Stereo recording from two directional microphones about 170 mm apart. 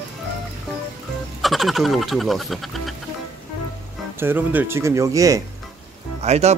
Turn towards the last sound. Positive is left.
turn(degrees=-40)  # may be behind; listen again after turning